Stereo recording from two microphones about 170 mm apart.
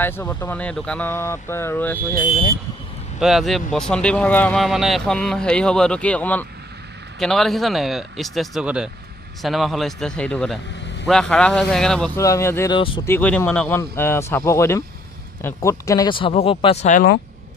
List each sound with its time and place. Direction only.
0.0 s speech: 10° left (ahead or behind)
3.2 s speech: centre (ahead or behind)
12.2 s speech: 20° left (ahead or behind)
12.7 s speech: 30° left (ahead or behind)
13.0 s speech: 10° left (ahead or behind); by 17.0 s 40° left (ahead or behind)